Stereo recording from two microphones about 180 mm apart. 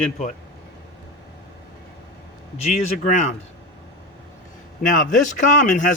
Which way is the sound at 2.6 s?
40° left (ahead or behind).